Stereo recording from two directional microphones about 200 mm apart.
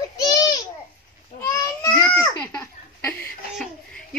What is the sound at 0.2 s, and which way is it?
Babbling, 20° left (ahead or behind).